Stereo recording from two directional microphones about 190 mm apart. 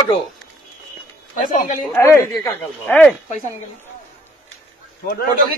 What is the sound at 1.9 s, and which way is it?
Speech, 15° left (ahead or behind).